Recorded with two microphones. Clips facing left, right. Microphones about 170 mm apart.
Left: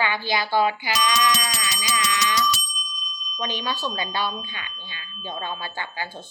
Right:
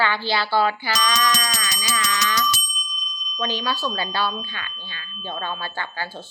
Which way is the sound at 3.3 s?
20° left (ahead or behind).